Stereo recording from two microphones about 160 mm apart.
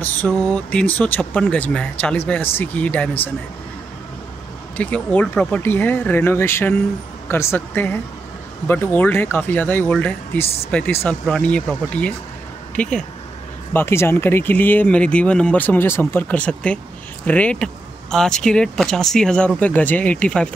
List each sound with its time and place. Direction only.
0.0 s speech: 10° left (ahead or behind)
4.7 s speech: 10° left (ahead or behind)